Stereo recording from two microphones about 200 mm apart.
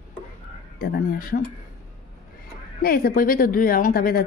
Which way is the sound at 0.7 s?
50° left (ahead or behind).